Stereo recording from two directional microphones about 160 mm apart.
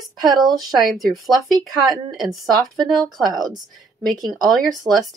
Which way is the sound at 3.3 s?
25° right (ahead or behind).